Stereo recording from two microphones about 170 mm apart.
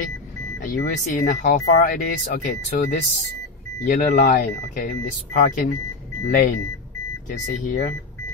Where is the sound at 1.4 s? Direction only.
50° left (ahead or behind).